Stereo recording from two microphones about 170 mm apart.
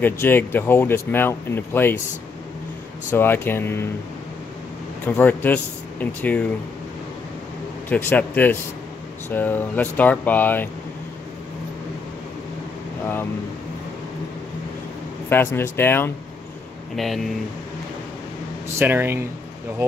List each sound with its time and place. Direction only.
0.0 s speech: 10° left (ahead or behind)
3.1 s speech: 10° left (ahead or behind)
5.0 s speech: 10° left (ahead or behind)
7.9 s speech: 10° left (ahead or behind)
15.2 s speech: 15° left (ahead or behind)
16.9 s speech: centre (ahead or behind)
18.8 s speech: 15° right (ahead or behind)